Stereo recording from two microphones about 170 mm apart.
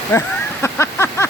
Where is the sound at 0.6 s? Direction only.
15° left (ahead or behind).